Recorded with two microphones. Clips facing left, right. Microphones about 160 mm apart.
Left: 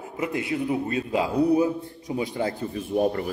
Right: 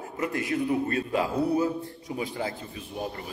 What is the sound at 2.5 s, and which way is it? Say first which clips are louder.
Speech: left 9 dB; 55° left (ahead or behind).